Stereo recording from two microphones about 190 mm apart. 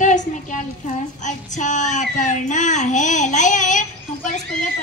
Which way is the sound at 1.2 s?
40° left (ahead or behind).